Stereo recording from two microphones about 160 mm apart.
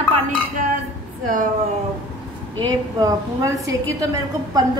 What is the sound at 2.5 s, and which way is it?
Speech, 25° right (ahead or behind).